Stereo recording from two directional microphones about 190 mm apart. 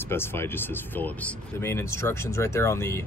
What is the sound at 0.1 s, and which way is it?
Speech, 10° left (ahead or behind).